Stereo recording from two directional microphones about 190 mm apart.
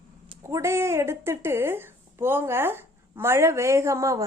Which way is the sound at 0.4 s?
15° right (ahead or behind).